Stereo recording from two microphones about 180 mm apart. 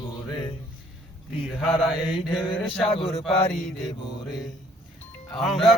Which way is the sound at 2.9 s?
35° left (ahead or behind).